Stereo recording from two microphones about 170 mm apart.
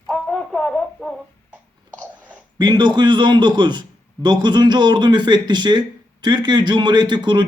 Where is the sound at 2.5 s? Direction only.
25° right (ahead or behind).